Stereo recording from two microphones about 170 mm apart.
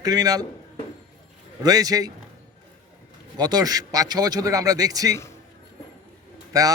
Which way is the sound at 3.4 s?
25° right (ahead or behind).